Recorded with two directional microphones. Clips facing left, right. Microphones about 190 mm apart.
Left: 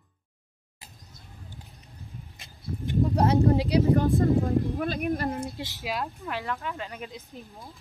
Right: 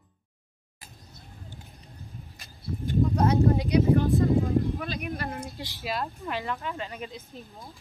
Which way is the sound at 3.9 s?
50° left (ahead or behind).